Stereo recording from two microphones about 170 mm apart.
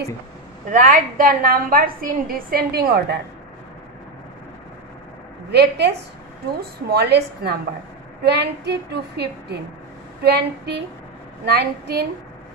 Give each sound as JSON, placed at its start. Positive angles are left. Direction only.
{"t": 0.7, "sound": "a woman's voice", "side_deg": -50}
{"t": 5.5, "sound": "a woman's voice", "side_deg": -75}